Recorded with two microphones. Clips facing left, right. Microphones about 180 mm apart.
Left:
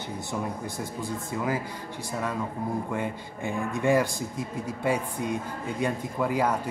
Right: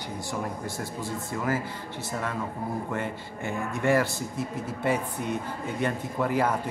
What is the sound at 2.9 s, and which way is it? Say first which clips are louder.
Speech: left 1 dB; 15° left (ahead or behind).